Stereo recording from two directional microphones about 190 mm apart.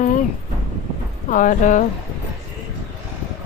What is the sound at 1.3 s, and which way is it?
Speech, 40° left (ahead or behind).